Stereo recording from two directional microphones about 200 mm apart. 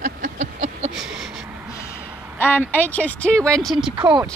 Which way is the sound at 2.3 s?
10° left (ahead or behind).